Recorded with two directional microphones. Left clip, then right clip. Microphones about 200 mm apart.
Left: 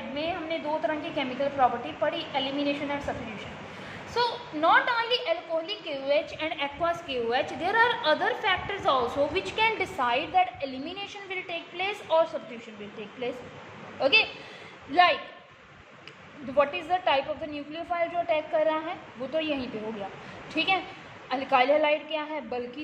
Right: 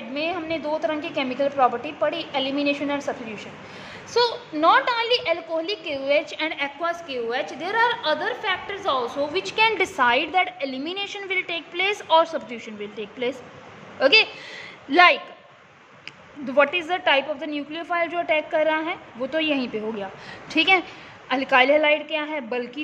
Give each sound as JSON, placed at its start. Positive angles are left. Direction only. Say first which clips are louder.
{"t": 0.1, "sound": "a woman's voice", "louder": "right 5 dB", "side_deg": -55}
{"t": 6.5, "sound": "a woman's voice", "louder": "right 3 dB", "side_deg": -25}
{"t": 6.9, "sound": "a woman's voice", "louder": "right 1 dB", "side_deg": -15}
{"t": 13.9, "sound": "a woman's voice", "louder": "right 6 dB", "side_deg": -45}
{"t": 16.5, "sound": "a woman's voice", "louder": "right 5 dB", "side_deg": -40}